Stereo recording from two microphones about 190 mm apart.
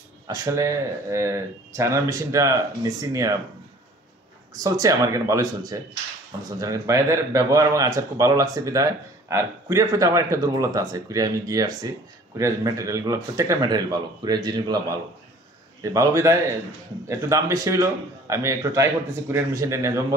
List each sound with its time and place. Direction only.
0.3 s speech: 15° right (ahead or behind)
4.6 s speech: 15° right (ahead or behind)